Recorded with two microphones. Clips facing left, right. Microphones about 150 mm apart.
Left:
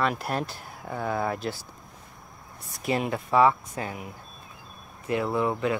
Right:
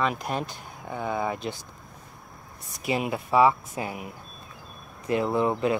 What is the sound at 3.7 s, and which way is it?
Speech, 15° right (ahead or behind).